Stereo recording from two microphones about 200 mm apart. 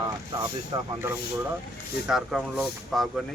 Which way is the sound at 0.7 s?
25° right (ahead or behind).